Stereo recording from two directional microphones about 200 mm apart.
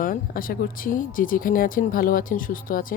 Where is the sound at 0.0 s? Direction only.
45° left (ahead or behind).